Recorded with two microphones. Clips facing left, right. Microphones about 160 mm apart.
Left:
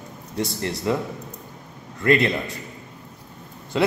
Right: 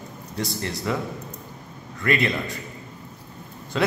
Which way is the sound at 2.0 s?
25° left (ahead or behind).